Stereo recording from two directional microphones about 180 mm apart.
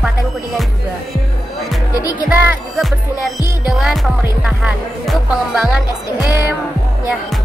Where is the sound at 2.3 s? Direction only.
10° right (ahead or behind).